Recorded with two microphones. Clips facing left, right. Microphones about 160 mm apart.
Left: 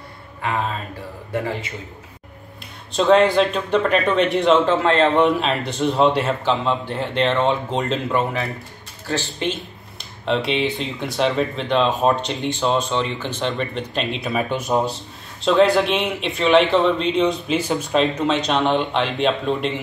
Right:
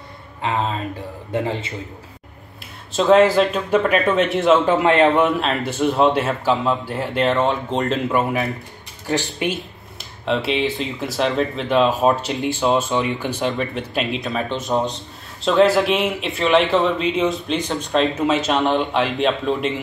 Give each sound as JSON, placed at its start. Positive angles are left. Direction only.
{"t": 1.3, "sound": "a man's voice", "side_deg": -20}
{"t": 2.9, "sound": "speech", "side_deg": 0}
{"t": 5.2, "sound": "speech", "side_deg": 0}
{"t": 9.6, "sound": "speech", "side_deg": 0}
{"t": 14.3, "sound": "speech", "side_deg": 10}
{"t": 15.4, "sound": "speech", "side_deg": 0}